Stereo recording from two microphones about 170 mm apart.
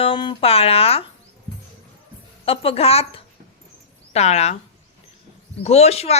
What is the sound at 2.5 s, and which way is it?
Speech, 35° left (ahead or behind).